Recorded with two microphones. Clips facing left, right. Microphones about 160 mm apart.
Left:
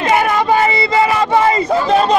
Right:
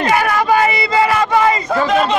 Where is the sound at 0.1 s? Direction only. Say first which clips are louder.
Left 2 dB; 20° left (ahead or behind).